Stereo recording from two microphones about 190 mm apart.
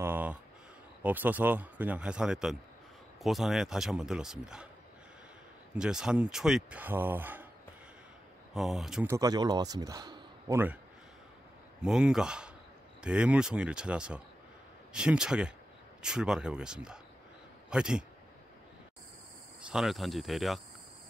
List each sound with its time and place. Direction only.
0.0 s a sound: 10° right (ahead or behind)
1.0 s speech: 10° right (ahead or behind)
5.8 s speech: 5° right (ahead or behind)
8.5 s speech: centre (ahead or behind)
9.0 s a man's voice: 15° right (ahead or behind)
11.8 s speech: centre (ahead or behind)
19.6 s speech: 5° right (ahead or behind)